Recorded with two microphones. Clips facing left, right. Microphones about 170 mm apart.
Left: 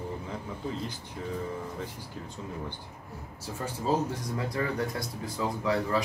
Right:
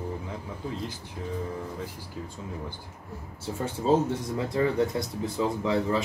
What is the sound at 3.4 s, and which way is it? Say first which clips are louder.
Speech: right 4 dB; 25° right (ahead or behind).